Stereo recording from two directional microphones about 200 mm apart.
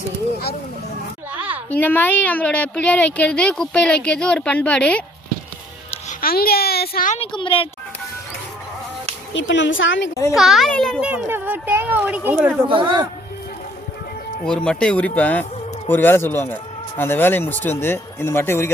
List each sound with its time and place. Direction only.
1.3 s a sound: 10° right (ahead or behind)
1.7 s speech: 10° left (ahead or behind)
6.2 s a child's voice: 50° left (ahead or behind)
7.2 s speech: 25° left (ahead or behind)
9.3 s a woman's voice: 65° left (ahead or behind)
10.3 s a child's voice: centre (ahead or behind)
12.6 s speech: 25° right (ahead or behind)
14.4 s speech: 5° left (ahead or behind)